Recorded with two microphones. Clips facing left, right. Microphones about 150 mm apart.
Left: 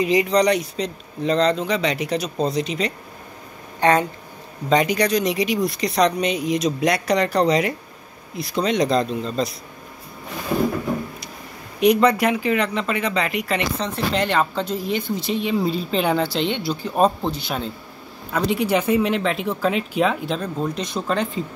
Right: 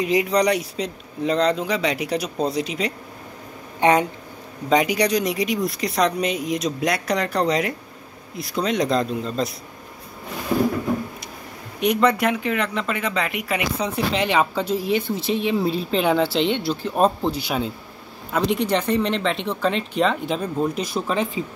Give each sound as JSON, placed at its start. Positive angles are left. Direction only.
{"t": 0.0, "sound": "speech", "side_deg": 0}
{"t": 3.8, "sound": "speech", "side_deg": -20}
{"t": 5.2, "sound": "speech", "side_deg": 0}
{"t": 11.8, "sound": "speech", "side_deg": 0}
{"t": 20.3, "sound": "speech", "side_deg": -5}